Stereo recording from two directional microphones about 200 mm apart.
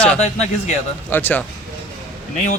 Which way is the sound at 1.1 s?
10° left (ahead or behind).